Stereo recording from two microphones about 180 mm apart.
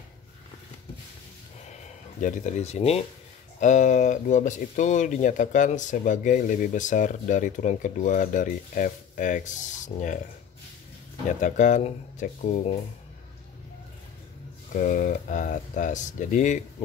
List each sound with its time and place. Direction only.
2.2 s speech: 45° left (ahead or behind)
11.4 s speech: 45° left (ahead or behind)
14.7 s speech: 45° left (ahead or behind)